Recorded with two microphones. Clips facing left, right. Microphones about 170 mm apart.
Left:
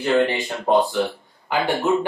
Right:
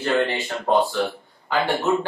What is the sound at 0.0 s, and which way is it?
Speech, 15° left (ahead or behind).